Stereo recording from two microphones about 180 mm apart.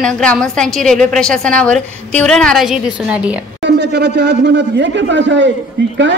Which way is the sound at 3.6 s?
70° right (ahead or behind).